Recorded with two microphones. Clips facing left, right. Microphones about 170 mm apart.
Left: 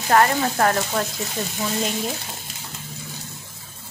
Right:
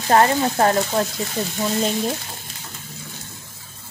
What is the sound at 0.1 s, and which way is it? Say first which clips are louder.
Frying: right 2 dB; 30° right (ahead or behind).